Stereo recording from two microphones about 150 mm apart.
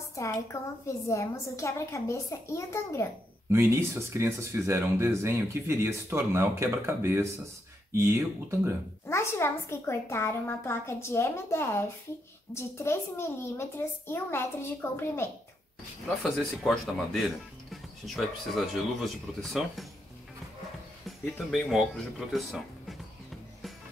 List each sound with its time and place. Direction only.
0.1 s a woman's voice: 20° left (ahead or behind)
3.5 s speech: 15° right (ahead or behind)
9.0 s a woman's voice: 15° left (ahead or behind)
16.2 s speech: centre (ahead or behind)
21.5 s speech: centre (ahead or behind)